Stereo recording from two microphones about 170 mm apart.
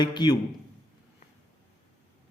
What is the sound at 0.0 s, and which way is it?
Speech, 25° left (ahead or behind).